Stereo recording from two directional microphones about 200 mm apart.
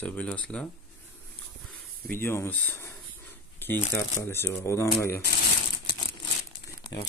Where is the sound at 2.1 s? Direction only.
10° left (ahead or behind).